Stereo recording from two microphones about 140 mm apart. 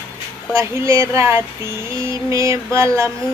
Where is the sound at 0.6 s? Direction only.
20° right (ahead or behind).